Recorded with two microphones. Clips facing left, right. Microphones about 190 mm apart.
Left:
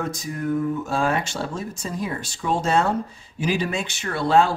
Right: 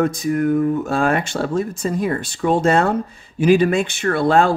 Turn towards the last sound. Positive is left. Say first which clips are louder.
# right 4 dB
turn(degrees=-55)  # may be behind; listen again after turning